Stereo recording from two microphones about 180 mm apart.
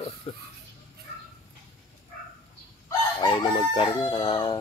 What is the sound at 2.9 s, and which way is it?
Crowing, 25° left (ahead or behind).